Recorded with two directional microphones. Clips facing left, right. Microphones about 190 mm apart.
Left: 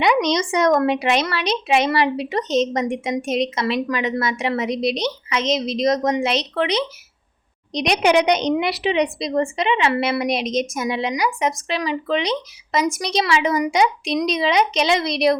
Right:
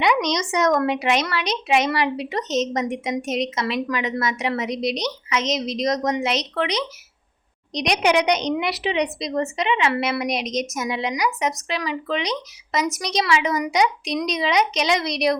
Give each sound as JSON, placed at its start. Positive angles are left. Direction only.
{"t": 0.0, "sound": "a woman's voice", "side_deg": 30}